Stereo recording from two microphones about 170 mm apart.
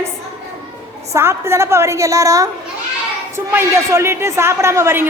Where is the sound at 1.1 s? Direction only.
15° right (ahead or behind).